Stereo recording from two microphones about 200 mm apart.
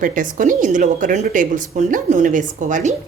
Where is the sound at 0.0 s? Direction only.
40° right (ahead or behind).